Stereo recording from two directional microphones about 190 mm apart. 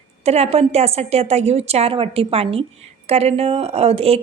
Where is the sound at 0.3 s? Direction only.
35° right (ahead or behind).